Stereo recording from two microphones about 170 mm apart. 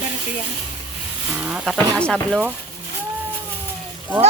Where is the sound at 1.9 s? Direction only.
5° left (ahead or behind).